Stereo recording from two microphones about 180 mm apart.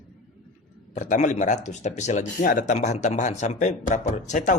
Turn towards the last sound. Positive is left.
turn(degrees=45)  # may be behind; listen again after turning